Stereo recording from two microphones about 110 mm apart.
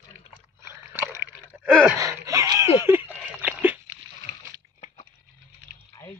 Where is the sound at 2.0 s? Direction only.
30° right (ahead or behind).